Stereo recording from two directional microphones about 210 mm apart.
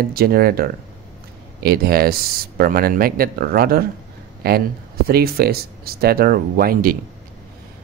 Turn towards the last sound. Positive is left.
turn(degrees=-45)  # may be behind; listen again after turning